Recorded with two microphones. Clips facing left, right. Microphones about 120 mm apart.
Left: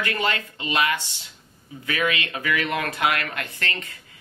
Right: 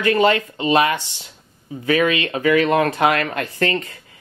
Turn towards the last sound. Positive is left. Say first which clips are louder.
# right 10 dB
turn(degrees=-35)  # may be behind; listen again after turning